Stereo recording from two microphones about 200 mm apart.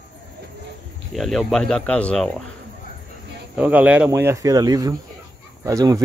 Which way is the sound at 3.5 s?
5° right (ahead or behind).